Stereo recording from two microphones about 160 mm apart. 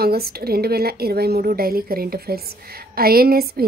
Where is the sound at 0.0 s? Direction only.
75° right (ahead or behind).